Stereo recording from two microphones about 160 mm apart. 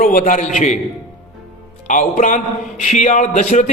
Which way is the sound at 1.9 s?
50° left (ahead or behind).